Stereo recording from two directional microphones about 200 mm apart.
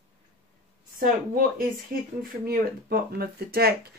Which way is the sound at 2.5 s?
50° right (ahead or behind).